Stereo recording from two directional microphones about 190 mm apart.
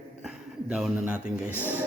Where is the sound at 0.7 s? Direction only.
5° right (ahead or behind).